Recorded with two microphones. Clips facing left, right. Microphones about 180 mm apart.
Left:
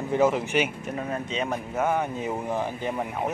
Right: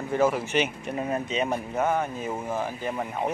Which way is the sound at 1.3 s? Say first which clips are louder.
Right 2 dB; 5° right (ahead or behind).